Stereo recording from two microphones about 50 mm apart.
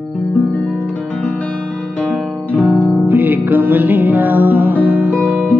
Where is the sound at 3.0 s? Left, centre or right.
Right.